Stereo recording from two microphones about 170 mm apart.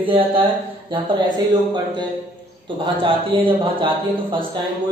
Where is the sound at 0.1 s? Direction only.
30° right (ahead or behind).